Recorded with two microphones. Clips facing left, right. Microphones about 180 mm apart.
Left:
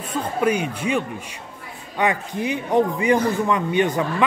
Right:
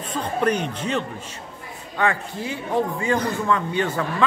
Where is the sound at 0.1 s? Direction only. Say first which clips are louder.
Left 1 dB; 10° left (ahead or behind).